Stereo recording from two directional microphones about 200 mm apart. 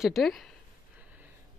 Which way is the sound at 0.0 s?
Centre (ahead or behind).